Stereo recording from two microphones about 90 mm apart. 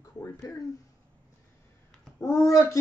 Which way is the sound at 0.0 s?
35° left (ahead or behind).